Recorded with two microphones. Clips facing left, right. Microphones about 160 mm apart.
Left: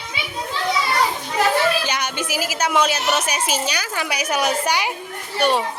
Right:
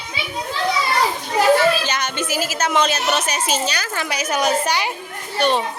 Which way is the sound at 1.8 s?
10° left (ahead or behind).